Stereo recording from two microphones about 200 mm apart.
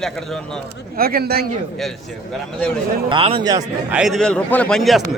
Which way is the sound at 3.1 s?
25° right (ahead or behind).